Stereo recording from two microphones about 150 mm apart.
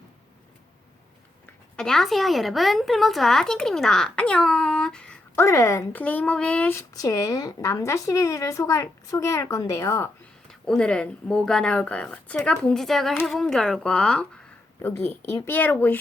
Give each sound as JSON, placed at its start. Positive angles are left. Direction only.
{"t": 1.7, "sound": "a woman's voice", "side_deg": 5}
{"t": 5.5, "sound": "speech", "side_deg": 20}
{"t": 10.5, "sound": "a woman's voice", "side_deg": 5}
{"t": 15.3, "sound": "speech", "side_deg": 15}